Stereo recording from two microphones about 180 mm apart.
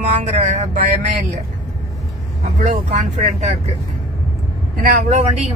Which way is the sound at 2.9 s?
40° right (ahead or behind).